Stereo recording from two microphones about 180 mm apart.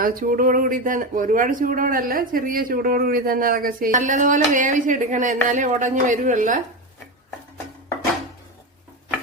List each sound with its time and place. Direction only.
0.0 s speech: 50° right (ahead or behind)